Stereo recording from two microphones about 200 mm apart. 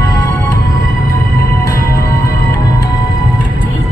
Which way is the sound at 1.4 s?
50° left (ahead or behind).